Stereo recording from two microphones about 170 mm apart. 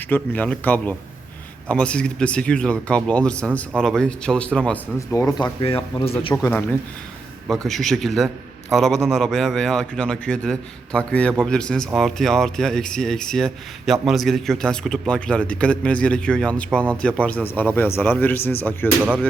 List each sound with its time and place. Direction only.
0.1 s speech: 10° left (ahead or behind)
4.9 s speech: 20° left (ahead or behind)
7.4 s speech: centre (ahead or behind)
18.9 s speech: 10° right (ahead or behind)